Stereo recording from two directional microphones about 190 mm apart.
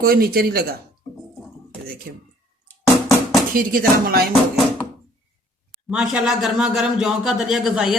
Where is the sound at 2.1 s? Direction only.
55° right (ahead or behind).